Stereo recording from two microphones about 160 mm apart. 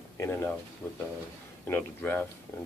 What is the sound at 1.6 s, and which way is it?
Speech, 10° left (ahead or behind).